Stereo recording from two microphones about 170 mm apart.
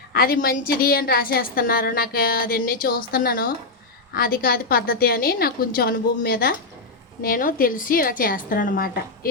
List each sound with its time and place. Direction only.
0.1 s a woman's voice: 60° left (ahead or behind)